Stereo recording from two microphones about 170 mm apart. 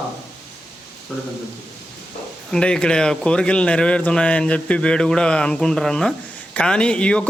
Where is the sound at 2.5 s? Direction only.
5° left (ahead or behind).